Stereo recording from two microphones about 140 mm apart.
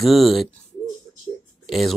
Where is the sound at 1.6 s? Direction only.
Centre (ahead or behind).